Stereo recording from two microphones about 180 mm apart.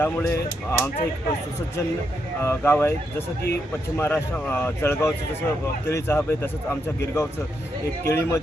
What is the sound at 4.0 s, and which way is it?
Speech, 10° left (ahead or behind).